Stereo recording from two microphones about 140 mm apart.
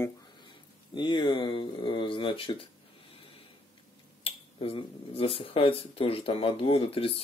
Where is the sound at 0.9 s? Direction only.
35° left (ahead or behind).